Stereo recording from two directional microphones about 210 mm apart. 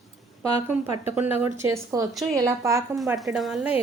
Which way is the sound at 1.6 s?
10° right (ahead or behind).